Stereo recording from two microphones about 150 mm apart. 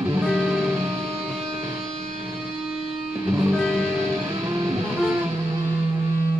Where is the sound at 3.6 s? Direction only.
Centre (ahead or behind).